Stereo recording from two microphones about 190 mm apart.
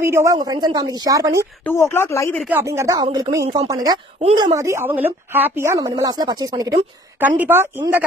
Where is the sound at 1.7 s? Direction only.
15° left (ahead or behind).